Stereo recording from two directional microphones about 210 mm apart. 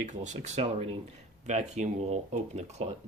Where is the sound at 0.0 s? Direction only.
35° right (ahead or behind).